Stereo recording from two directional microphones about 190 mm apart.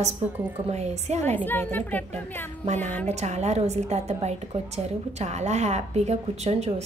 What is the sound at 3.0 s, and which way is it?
A woman's voice, 35° right (ahead or behind).